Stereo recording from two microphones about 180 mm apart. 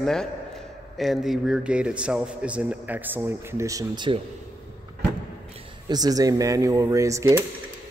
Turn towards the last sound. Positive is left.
turn(degrees=-15)  # may be behind; listen again after turning